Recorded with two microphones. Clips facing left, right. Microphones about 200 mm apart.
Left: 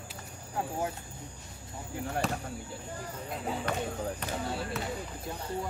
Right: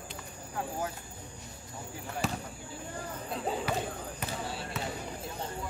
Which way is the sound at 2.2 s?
Centre (ahead or behind).